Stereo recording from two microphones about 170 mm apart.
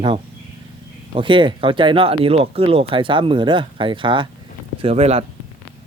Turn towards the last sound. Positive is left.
turn(degrees=-40)  # may be behind; listen again after turning